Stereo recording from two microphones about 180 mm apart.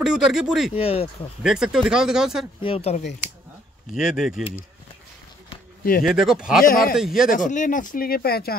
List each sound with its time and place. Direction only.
0.0 s speech: 5° right (ahead or behind)
0.7 s speech: 35° left (ahead or behind)
1.4 s speech: 5° right (ahead or behind)
2.6 s speech: 35° left (ahead or behind)
3.9 s speech: 5° right (ahead or behind)
6.0 s speech: 5° right (ahead or behind)
6.6 s speech: 55° left (ahead or behind)
7.0 s speech: centre (ahead or behind)
7.2 s speech: 45° left (ahead or behind)